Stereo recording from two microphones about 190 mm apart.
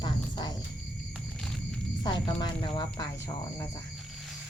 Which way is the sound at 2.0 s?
25° left (ahead or behind).